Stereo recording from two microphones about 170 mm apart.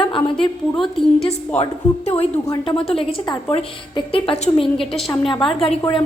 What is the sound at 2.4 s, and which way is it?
A woman's voice, 25° left (ahead or behind).